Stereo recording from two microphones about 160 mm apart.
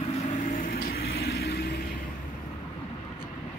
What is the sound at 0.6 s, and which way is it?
Vehicle, 70° left (ahead or behind).